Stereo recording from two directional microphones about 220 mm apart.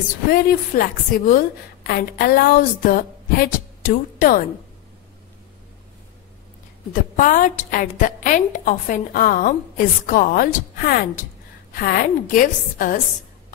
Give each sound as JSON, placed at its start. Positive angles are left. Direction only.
{"t": 0.3, "sound": "a woman's voice", "side_deg": 40}
{"t": 6.9, "sound": "a woman's voice", "side_deg": 35}